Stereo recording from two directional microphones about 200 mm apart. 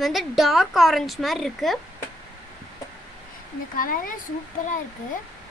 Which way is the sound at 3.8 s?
45° left (ahead or behind).